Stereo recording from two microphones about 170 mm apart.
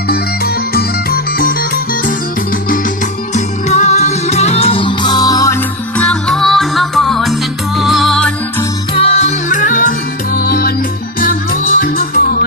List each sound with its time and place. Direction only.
0.1 s music: 65° left (ahead or behind)
3.3 s music: 40° left (ahead or behind); by 5.5 s 20° left (ahead or behind)
6.0 s music: 5° left (ahead or behind)
9.0 s music: 40° left (ahead or behind)
10.3 s music: 65° left (ahead or behind)